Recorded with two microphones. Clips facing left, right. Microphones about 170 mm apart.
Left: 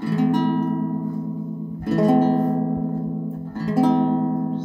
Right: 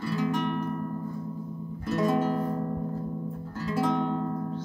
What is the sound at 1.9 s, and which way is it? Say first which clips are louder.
Music: left 9 dB; 45° left (ahead or behind).